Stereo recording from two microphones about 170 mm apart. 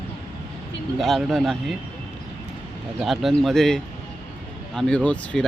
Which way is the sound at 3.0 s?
Centre (ahead or behind).